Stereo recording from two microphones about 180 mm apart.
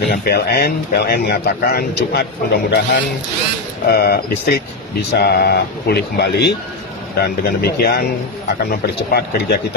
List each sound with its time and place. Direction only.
0.1 s speech: 60° left (ahead or behind)
3.8 s speech: 60° left (ahead or behind)